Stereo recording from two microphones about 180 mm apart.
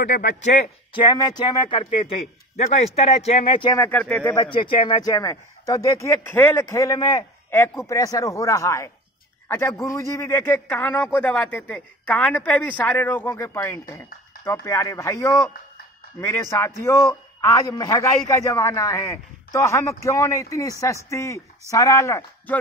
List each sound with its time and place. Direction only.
1.1 s speech: 25° left (ahead or behind)
3.7 s a man's voice: 10° left (ahead or behind)
4.5 s a man's voice: 25° left (ahead or behind)